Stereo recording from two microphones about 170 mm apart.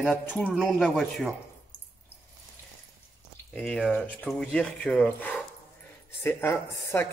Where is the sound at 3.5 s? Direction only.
Centre (ahead or behind).